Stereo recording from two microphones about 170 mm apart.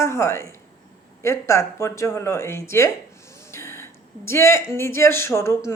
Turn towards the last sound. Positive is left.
turn(degrees=15)  # may be behind; listen again after turning